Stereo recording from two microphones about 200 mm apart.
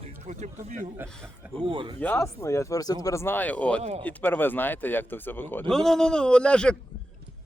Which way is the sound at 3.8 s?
30° right (ahead or behind).